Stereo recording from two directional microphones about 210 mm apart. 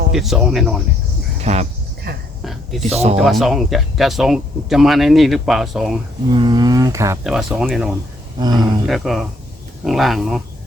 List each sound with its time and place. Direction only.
0.1 s speech: centre (ahead or behind)
1.4 s speech: 30° right (ahead or behind)
2.1 s a sound: 50° right (ahead or behind)
2.4 s a sound: centre (ahead or behind)
2.8 s speech: 30° right (ahead or behind)
3.2 s speech: centre (ahead or behind)
6.3 s speech: 20° right (ahead or behind)
7.3 s speech: centre (ahead or behind)
8.4 s speech: 20° right (ahead or behind)
8.9 s speech: centre (ahead or behind)